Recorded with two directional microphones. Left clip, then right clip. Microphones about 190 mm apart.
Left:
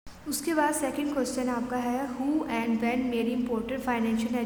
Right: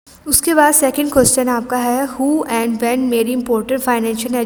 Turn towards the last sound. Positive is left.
turn(degrees=-50)  # may be behind; listen again after turning